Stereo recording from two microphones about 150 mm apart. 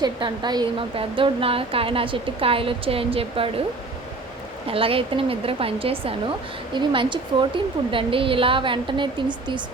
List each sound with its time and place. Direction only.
0.0 s speech: 30° right (ahead or behind)
4.7 s speech: 40° right (ahead or behind)